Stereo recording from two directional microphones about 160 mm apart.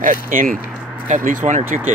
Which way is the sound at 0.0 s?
55° right (ahead or behind).